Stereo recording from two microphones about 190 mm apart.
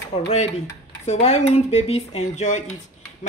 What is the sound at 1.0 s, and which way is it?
Speech, 35° left (ahead or behind).